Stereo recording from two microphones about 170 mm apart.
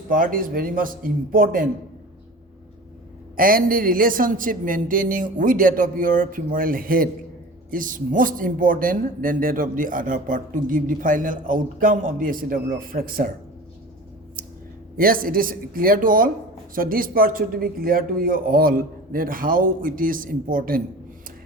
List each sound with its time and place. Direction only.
0.1 s a man's voice: 55° right (ahead or behind)
3.3 s a man's voice: 55° right (ahead or behind)
14.4 s a sound: 55° right (ahead or behind)
14.9 s a man's voice: 55° right (ahead or behind)